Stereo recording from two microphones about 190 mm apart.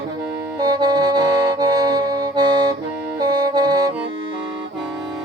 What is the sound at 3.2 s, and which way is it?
Saxophone, 20° right (ahead or behind).